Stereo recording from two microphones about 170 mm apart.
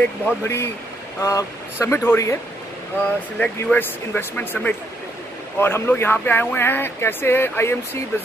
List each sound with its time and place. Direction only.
0.0 s speech: 15° left (ahead or behind)
3.3 s speech: 10° left (ahead or behind)